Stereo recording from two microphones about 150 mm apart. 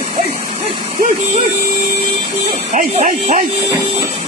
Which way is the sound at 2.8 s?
60° right (ahead or behind).